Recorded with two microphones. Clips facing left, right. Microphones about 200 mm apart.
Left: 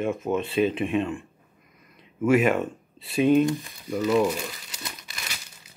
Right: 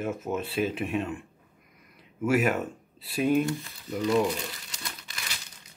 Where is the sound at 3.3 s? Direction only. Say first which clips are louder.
Left 5 dB; 20° left (ahead or behind).